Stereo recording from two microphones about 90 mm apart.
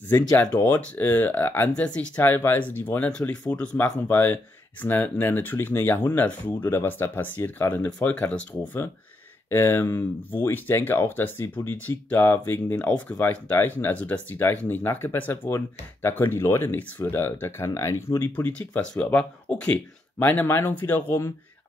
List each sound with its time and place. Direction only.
0.4 s speech: 20° left (ahead or behind)
9.5 s speech: 30° left (ahead or behind)
18.3 s speech: 15° left (ahead or behind)